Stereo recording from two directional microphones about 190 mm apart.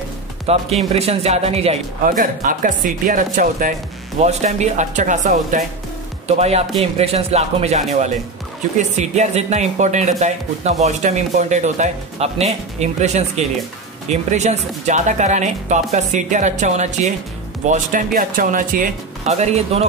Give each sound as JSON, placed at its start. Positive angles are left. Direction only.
{"t": 0.5, "sound": "speech", "side_deg": -35}
{"t": 2.0, "sound": "speech", "side_deg": -45}
{"t": 14.3, "sound": "speech", "side_deg": -35}